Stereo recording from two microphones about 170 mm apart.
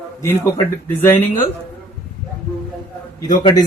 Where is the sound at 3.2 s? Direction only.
20° left (ahead or behind).